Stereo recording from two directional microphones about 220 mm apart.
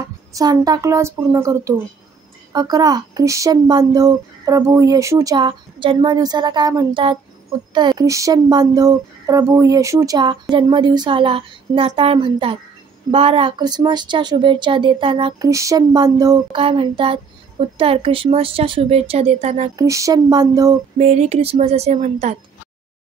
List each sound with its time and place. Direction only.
0.0 s speech: 15° right (ahead or behind)
19.8 s speech: 15° right (ahead or behind)
21.0 s speech: 30° right (ahead or behind)